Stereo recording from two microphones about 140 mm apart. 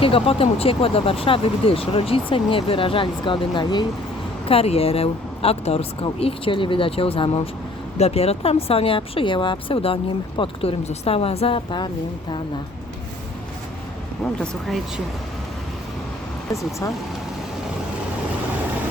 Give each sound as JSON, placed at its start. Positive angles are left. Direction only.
{"t": 0.0, "sound": "speech", "side_deg": 40}
{"t": 4.4, "sound": "speech", "side_deg": 45}
{"t": 14.3, "sound": "speech", "side_deg": 5}